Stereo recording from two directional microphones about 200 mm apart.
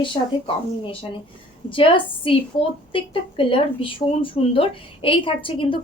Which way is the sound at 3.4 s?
25° left (ahead or behind).